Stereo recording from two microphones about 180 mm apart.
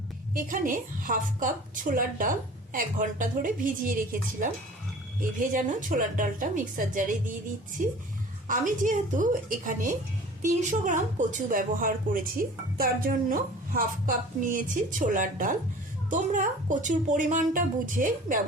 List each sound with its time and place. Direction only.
0.3 s a woman's voice: 50° right (ahead or behind)
5.5 s a woman's voice: 45° right (ahead or behind)
8.4 s a woman's voice: 45° right (ahead or behind)